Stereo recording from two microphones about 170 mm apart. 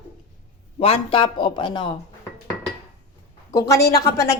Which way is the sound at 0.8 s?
35° left (ahead or behind).